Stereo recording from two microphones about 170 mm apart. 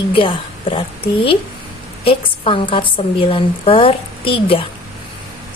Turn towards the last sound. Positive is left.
turn(degrees=30)  # may be behind; listen again after turning